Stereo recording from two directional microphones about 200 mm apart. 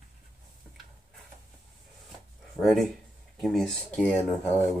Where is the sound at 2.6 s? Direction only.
Centre (ahead or behind).